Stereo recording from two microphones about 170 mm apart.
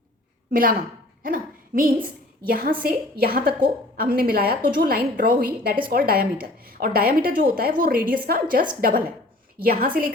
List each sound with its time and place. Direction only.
0.5 s a woman's voice: 55° right (ahead or behind)
1.2 s a sound: 55° right (ahead or behind)
2.5 s a woman's voice: 60° right (ahead or behind)